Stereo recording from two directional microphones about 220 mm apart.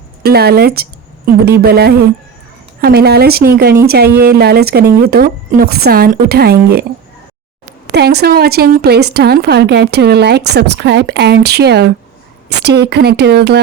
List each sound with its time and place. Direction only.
0.2 s a woman's voice: 45° right (ahead or behind)
0.8 s a sound: 45° right (ahead or behind)
1.6 s a woman's voice: 45° right (ahead or behind)
7.9 s a woman's voice: 45° right (ahead or behind)